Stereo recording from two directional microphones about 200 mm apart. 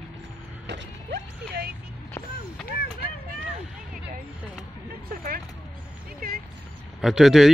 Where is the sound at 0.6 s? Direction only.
60° right (ahead or behind).